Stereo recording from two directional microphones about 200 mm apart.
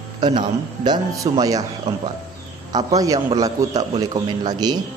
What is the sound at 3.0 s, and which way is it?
A man's voice, 15° right (ahead or behind).